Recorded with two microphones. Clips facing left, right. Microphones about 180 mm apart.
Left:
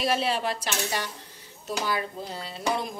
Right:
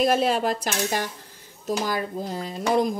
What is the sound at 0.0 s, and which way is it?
Speech, 50° right (ahead or behind).